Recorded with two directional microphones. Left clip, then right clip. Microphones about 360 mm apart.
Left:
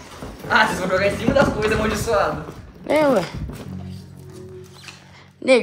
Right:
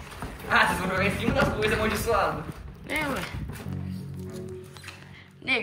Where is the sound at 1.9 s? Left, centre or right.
Left.